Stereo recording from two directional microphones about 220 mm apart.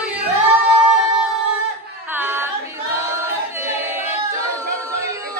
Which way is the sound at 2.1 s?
10° right (ahead or behind).